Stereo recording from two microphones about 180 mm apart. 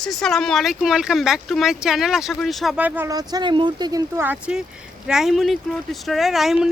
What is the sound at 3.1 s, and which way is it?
Speech, 20° right (ahead or behind).